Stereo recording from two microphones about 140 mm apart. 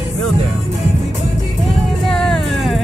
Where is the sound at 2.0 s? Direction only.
Centre (ahead or behind).